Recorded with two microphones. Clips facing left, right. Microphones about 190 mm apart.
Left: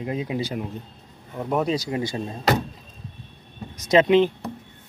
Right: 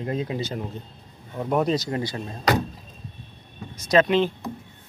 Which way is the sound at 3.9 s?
20° left (ahead or behind).